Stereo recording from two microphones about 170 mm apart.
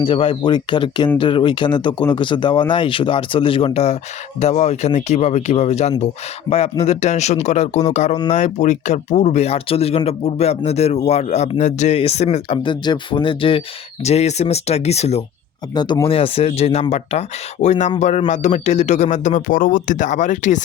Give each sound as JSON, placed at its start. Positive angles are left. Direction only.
{"t": 0.0, "sound": "speech", "side_deg": 30}
{"t": 15.7, "sound": "speech", "side_deg": 25}